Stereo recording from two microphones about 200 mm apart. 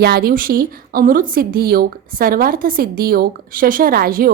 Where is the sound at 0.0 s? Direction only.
50° right (ahead or behind).